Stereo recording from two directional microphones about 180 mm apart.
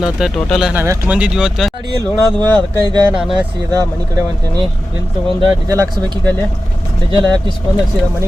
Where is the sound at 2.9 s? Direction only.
20° right (ahead or behind).